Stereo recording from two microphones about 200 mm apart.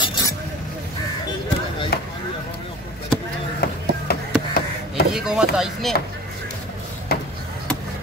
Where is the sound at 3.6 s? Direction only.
50° left (ahead or behind).